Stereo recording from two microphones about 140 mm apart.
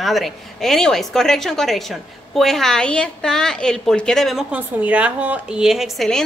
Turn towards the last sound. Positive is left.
turn(degrees=5)  # may be behind; listen again after turning